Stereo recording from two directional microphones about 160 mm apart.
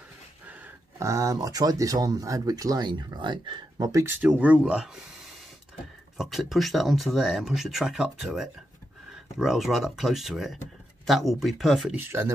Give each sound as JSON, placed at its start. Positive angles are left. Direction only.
{"t": 0.5, "sound": "speech", "side_deg": -20}
{"t": 6.1, "sound": "speech", "side_deg": 0}
{"t": 12.0, "sound": "speech", "side_deg": -15}